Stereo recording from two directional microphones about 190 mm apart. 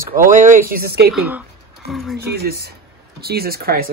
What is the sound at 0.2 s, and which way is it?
Speech, 45° right (ahead or behind).